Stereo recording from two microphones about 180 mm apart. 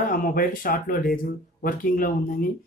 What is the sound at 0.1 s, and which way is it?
A man's voice, 50° left (ahead or behind).